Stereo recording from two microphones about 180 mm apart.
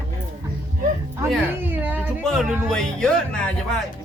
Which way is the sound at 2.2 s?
Centre (ahead or behind).